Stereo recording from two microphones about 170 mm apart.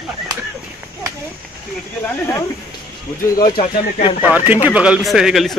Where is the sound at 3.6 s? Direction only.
35° left (ahead or behind).